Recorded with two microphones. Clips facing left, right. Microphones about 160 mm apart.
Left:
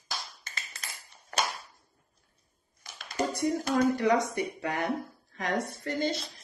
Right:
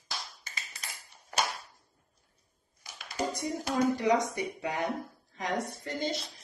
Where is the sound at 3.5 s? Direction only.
15° right (ahead or behind).